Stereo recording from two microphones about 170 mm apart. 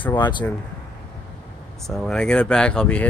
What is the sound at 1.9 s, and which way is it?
Speech, 5° left (ahead or behind).